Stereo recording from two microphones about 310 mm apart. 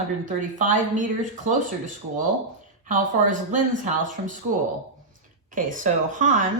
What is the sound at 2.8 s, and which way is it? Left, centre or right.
A woman's voice, right.